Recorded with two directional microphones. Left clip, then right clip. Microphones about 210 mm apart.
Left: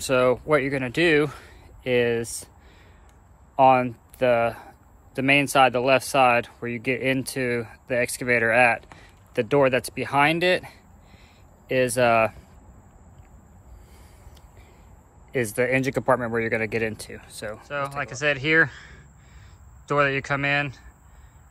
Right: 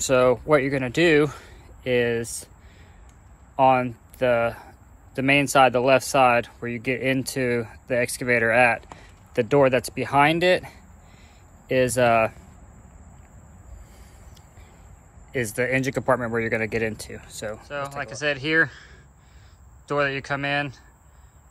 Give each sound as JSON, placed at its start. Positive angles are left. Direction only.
{"t": 0.0, "sound": "speech", "side_deg": 10}
{"t": 3.5, "sound": "speech", "side_deg": 15}
{"t": 15.3, "sound": "speech", "side_deg": 20}
{"t": 17.6, "sound": "a man's voice", "side_deg": -10}